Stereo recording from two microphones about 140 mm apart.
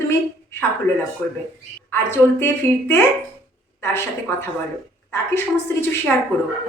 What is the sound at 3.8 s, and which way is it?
A woman's voice, 15° left (ahead or behind).